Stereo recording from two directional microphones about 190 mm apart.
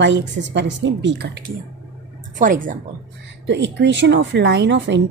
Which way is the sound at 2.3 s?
45° right (ahead or behind).